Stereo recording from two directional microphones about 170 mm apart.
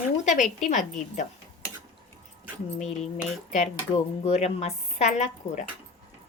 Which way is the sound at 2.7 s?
40° left (ahead or behind).